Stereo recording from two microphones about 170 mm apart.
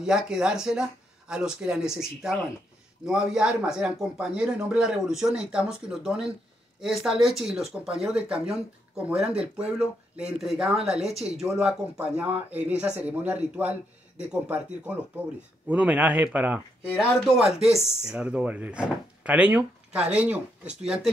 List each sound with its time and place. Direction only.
0.0 s speech: 5° right (ahead or behind)